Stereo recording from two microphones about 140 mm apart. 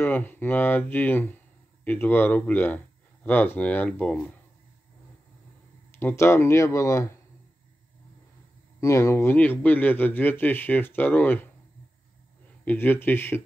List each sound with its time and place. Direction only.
0.0 s a man's voice: 15° left (ahead or behind)
5.9 s speech: 20° left (ahead or behind)
8.8 s a man's voice: 20° left (ahead or behind)
12.6 s a man's voice: 15° left (ahead or behind)